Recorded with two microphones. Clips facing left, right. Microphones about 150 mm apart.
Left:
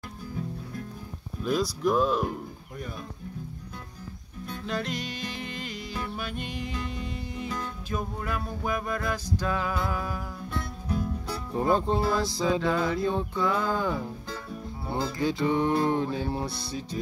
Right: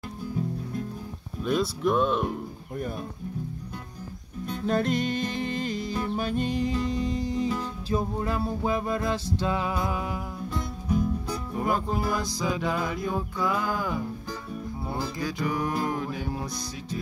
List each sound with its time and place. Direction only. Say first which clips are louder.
1.4 s speech: right 1 dB; centre (ahead or behind)
4.6 s music: right 8 dB; 45° right (ahead or behind); by 10.7 s 20° right (ahead or behind)
11.5 s music: left 3 dB; 30° left (ahead or behind)
12.1 s music: left 2 dB; 20° right (ahead or behind)
12.4 s music: left 3 dB; 25° left (ahead or behind)
12.6 s music: left 2 dB; 20° right (ahead or behind)
13.0 s music: left 2 dB; 25° left (ahead or behind)